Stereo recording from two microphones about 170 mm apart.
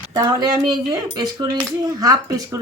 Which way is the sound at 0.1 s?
25° right (ahead or behind).